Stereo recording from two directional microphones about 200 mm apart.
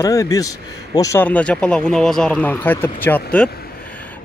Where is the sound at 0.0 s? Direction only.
15° left (ahead or behind).